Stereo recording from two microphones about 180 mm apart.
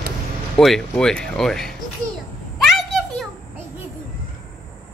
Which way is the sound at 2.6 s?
Centre (ahead or behind).